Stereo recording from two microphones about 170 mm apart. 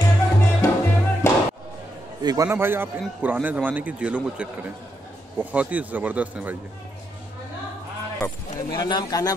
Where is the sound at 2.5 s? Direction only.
15° right (ahead or behind).